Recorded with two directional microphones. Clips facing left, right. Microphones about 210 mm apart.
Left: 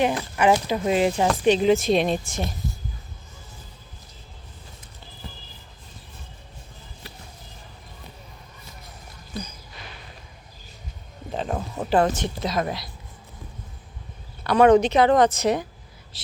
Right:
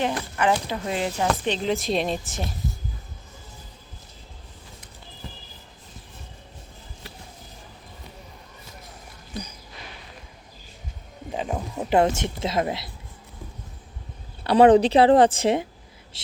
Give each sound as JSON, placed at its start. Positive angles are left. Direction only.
{"t": 0.0, "sound": "a woman's voice", "side_deg": 15}
{"t": 11.3, "sound": "a sound", "side_deg": -10}
{"t": 11.9, "sound": "speech", "side_deg": -25}
{"t": 14.4, "sound": "a woman's voice", "side_deg": -30}